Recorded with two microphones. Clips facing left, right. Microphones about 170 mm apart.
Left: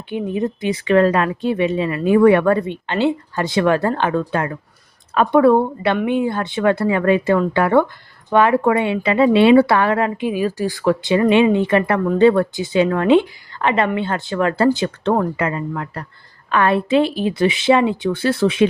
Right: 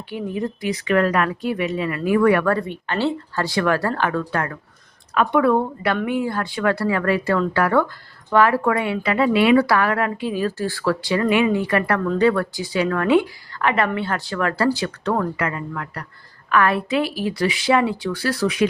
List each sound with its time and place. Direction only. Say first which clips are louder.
0.1 s speech: left 5 dB; 20° left (ahead or behind)
5.1 s speech: left 5 dB; 35° left (ahead or behind)